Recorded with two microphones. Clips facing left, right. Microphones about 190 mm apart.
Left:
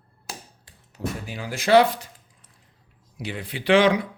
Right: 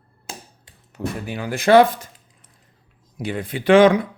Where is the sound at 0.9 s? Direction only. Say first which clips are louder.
Right 4 dB; 60° right (ahead or behind).